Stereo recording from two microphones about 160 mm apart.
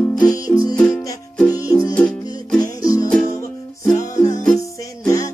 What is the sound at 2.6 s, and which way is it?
Music, 20° left (ahead or behind).